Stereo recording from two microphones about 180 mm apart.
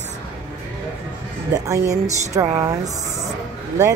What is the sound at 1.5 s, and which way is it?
A woman's voice, 20° right (ahead or behind).